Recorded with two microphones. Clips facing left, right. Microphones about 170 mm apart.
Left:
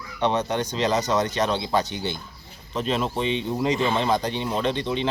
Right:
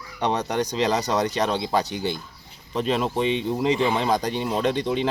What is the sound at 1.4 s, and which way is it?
Speech, centre (ahead or behind).